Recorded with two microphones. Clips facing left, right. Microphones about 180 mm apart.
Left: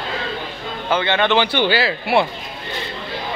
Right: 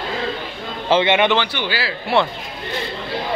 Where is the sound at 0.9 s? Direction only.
20° right (ahead or behind).